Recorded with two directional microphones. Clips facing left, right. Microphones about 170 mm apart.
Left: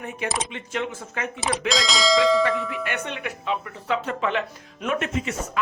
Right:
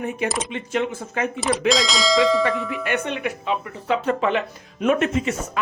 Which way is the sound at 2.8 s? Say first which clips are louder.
Right 5 dB; 20° right (ahead or behind).